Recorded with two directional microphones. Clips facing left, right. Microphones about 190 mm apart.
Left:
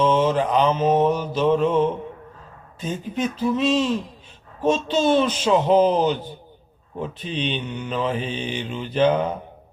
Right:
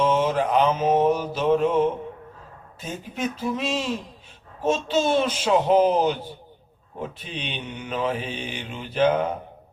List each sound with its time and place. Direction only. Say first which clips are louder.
0.0 s mantra: left 2 dB; 10° right (ahead or behind)